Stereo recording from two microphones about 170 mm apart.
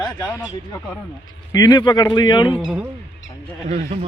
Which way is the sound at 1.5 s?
25° left (ahead or behind).